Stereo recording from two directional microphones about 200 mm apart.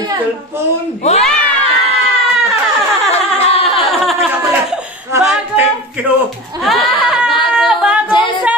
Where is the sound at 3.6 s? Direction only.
Centre (ahead or behind).